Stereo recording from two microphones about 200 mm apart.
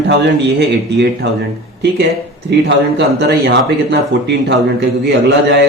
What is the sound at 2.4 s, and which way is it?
Speech, 60° right (ahead or behind).